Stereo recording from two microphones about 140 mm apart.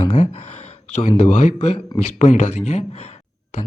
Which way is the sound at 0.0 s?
60° left (ahead or behind).